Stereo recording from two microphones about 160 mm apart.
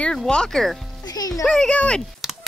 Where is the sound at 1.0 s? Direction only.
25° left (ahead or behind).